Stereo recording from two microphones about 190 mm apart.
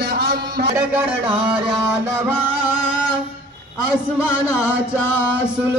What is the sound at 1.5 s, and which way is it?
Music, 10° right (ahead or behind).